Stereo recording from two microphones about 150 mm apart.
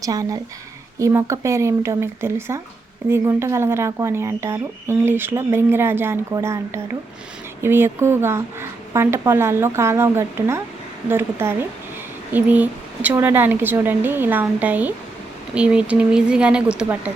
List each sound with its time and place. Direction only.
0.0 s speech: 25° right (ahead or behind); by 17.1 s 10° right (ahead or behind)